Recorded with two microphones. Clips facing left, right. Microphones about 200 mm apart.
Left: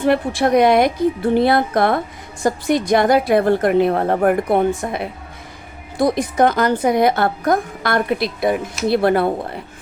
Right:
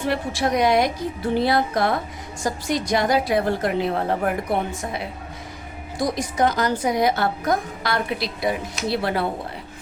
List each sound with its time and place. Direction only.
0.0 s a woman's voice: 55° left (ahead or behind)